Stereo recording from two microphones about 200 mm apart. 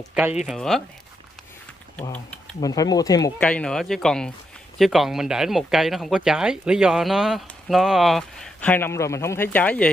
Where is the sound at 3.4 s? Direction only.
5° left (ahead or behind).